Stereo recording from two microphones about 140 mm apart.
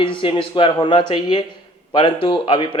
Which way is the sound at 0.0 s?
35° left (ahead or behind).